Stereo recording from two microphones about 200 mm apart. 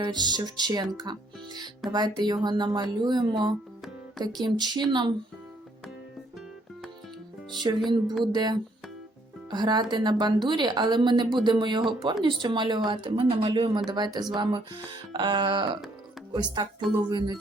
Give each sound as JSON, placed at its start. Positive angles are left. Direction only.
{"t": 0.0, "sound": "a woman's voice", "side_deg": -20}
{"t": 7.9, "sound": "a woman's voice", "side_deg": -20}